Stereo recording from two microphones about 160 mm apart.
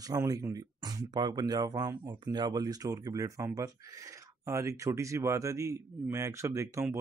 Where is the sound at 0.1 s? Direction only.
20° right (ahead or behind).